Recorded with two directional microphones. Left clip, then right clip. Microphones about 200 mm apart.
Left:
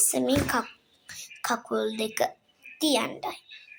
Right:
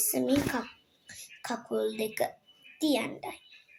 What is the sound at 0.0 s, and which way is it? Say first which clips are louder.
A woman's voice: left 3 dB; 10° left (ahead or behind).